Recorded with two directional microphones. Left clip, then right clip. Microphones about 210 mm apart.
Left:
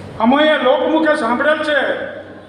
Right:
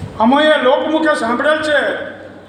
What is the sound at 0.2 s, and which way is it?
A man's voice, 50° right (ahead or behind).